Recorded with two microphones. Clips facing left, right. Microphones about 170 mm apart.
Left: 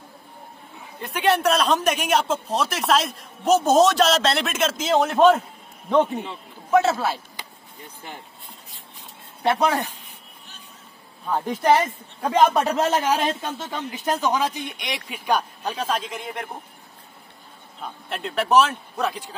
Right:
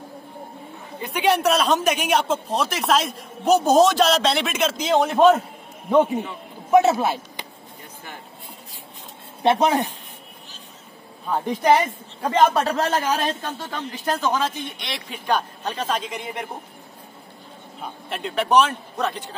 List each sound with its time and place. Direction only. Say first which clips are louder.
0.9 s a man's voice: right 1 dB; centre (ahead or behind); by 7.4 s 20° right (ahead or behind)
9.4 s speech: right 3 dB; 20° right (ahead or behind)
11.2 s speech: right 1 dB; centre (ahead or behind)
17.7 s a man's voice: even; centre (ahead or behind)